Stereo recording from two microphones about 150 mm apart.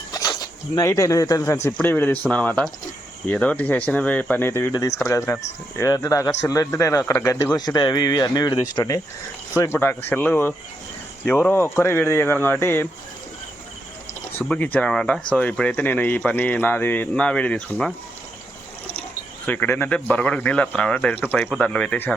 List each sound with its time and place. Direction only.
0.1 s speech: 25° left (ahead or behind)
9.6 s speech: 15° left (ahead or behind)
14.4 s speech: 10° left (ahead or behind)
19.5 s speech: 10° left (ahead or behind)